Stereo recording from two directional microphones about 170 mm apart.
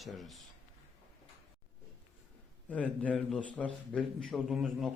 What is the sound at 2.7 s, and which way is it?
A man's voice, 5° left (ahead or behind).